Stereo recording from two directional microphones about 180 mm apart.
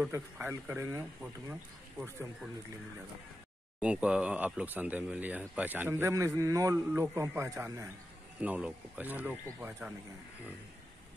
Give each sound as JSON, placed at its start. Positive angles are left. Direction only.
{"t": 0.1, "sound": "speech", "side_deg": -15}
{"t": 3.8, "sound": "speech", "side_deg": -5}